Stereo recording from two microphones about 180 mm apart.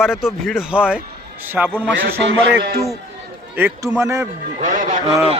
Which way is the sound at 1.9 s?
80° right.